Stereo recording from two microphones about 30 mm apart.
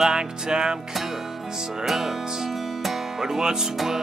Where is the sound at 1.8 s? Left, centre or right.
Centre.